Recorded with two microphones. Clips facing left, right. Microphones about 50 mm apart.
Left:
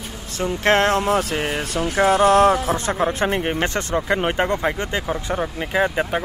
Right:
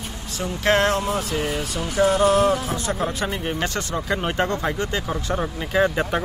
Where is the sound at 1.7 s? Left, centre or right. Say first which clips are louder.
Left 3 dB; left.